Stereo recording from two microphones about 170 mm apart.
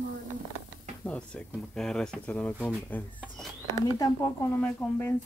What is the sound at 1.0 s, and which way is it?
Speech, 5° left (ahead or behind).